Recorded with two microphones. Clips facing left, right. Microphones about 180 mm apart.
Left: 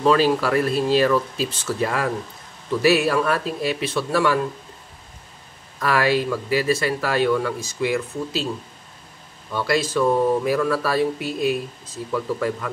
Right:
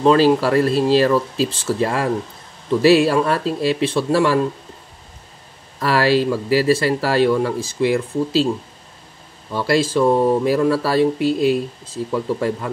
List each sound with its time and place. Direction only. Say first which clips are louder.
0.0 s speech: right 4 dB; 30° right (ahead or behind)
5.8 s speech: right 4 dB; 30° right (ahead or behind)
9.5 s speech: right 4 dB; 30° right (ahead or behind)